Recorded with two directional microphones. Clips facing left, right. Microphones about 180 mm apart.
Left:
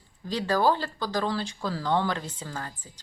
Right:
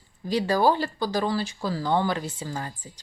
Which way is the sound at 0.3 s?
10° right (ahead or behind).